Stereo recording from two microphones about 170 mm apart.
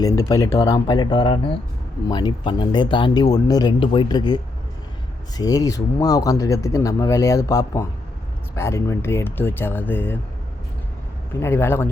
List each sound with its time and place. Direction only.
0.0 s speech: 20° left (ahead or behind)
5.4 s speech: 20° left (ahead or behind)
11.3 s speech: 15° left (ahead or behind)